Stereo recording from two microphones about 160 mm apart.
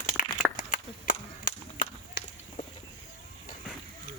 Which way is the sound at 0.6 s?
50° left (ahead or behind).